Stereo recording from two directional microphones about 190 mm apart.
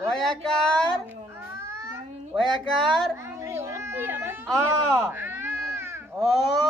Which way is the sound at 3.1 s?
15° right (ahead or behind).